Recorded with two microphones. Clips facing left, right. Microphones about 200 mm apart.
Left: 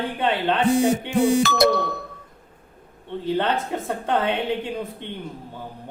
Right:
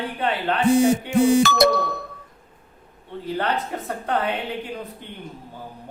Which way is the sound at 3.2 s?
25° left (ahead or behind).